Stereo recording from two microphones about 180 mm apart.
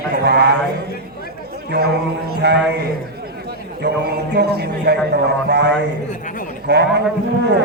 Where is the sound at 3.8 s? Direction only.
65° right (ahead or behind).